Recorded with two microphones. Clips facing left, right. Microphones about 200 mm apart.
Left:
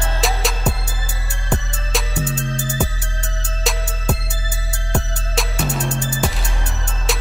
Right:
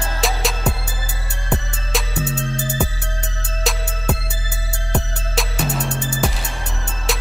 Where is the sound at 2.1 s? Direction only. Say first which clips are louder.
Even; 60° right (ahead or behind).